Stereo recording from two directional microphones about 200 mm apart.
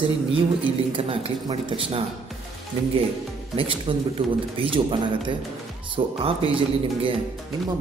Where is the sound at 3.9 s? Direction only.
25° right (ahead or behind).